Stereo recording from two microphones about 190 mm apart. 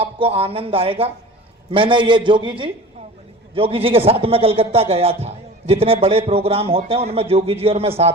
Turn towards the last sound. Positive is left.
turn(degrees=-30)  # may be behind; listen again after turning